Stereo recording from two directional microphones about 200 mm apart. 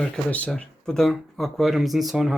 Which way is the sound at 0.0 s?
5° left (ahead or behind).